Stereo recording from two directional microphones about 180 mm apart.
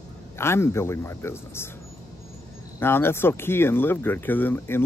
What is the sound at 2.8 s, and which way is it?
Speech, 10° left (ahead or behind).